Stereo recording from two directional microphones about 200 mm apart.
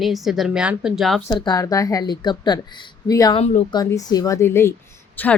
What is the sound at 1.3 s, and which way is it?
A woman's voice, 20° left (ahead or behind).